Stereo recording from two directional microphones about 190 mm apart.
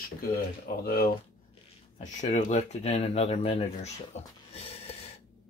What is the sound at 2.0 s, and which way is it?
Speech, 40° left (ahead or behind).